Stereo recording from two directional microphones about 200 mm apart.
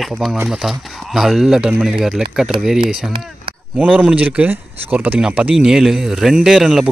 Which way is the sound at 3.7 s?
5° right (ahead or behind).